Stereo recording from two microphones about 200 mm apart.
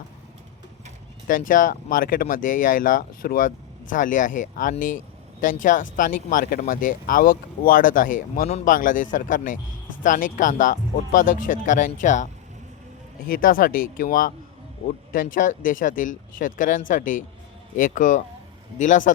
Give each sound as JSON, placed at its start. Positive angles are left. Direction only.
{"t": 1.3, "sound": "speech", "side_deg": 40}